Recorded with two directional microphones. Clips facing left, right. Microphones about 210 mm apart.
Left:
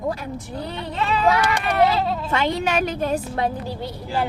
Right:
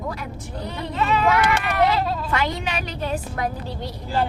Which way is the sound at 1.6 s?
30° left (ahead or behind).